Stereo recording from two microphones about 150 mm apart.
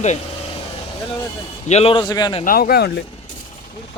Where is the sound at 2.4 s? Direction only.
80° left.